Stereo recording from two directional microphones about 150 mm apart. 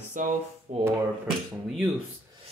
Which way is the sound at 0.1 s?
55° right (ahead or behind).